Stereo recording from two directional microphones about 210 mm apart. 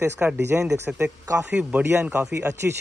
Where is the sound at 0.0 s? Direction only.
10° right (ahead or behind).